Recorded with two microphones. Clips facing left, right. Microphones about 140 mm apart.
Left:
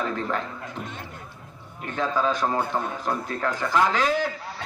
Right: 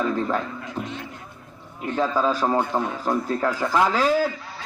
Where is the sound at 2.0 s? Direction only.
35° right (ahead or behind).